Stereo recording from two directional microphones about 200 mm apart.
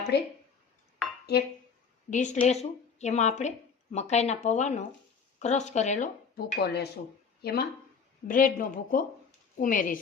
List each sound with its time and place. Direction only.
0.1 s speech: 55° left (ahead or behind)
1.3 s speech: 55° left (ahead or behind)
2.0 s speech: 40° left (ahead or behind)
6.3 s speech: 50° left (ahead or behind)